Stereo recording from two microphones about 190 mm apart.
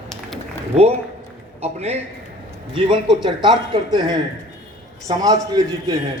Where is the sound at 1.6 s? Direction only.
35° right (ahead or behind).